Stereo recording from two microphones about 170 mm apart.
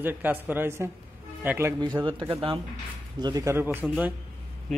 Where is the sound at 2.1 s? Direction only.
30° right (ahead or behind).